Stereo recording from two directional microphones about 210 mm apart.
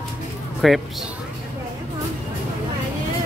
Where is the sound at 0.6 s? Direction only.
Centre (ahead or behind).